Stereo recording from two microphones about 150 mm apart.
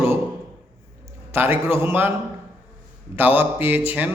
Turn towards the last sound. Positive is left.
turn(degrees=-10)  # may be behind; listen again after turning